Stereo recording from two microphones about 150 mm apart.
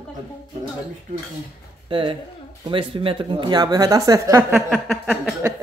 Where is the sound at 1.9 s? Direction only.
35° right (ahead or behind).